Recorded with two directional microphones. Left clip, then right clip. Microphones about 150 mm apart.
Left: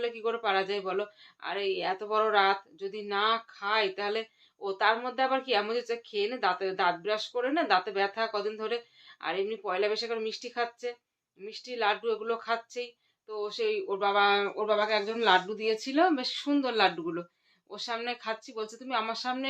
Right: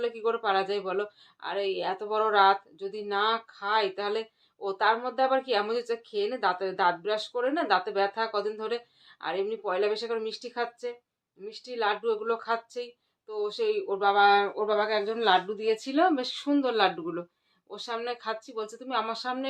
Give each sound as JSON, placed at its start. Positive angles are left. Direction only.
{"t": 0.0, "sound": "speech", "side_deg": 5}